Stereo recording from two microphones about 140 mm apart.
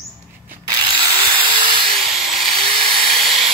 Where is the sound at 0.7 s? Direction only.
30° right (ahead or behind).